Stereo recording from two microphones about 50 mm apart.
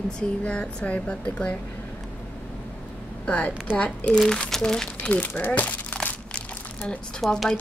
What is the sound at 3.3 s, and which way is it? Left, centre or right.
Speech, left.